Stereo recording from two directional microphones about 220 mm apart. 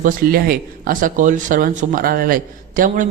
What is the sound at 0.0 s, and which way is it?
A man's voice, 40° right (ahead or behind).